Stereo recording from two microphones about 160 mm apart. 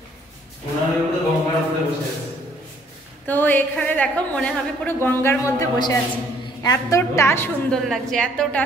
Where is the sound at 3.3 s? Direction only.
10° left (ahead or behind).